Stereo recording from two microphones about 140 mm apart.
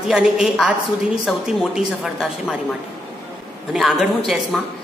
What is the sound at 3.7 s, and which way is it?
Speech, 5° right (ahead or behind).